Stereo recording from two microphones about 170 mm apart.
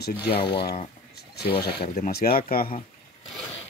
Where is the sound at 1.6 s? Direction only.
65° left (ahead or behind).